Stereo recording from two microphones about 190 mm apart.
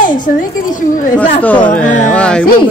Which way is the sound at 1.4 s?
10° left (ahead or behind).